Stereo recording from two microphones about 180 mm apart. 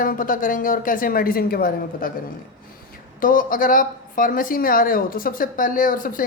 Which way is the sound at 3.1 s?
50° left (ahead or behind).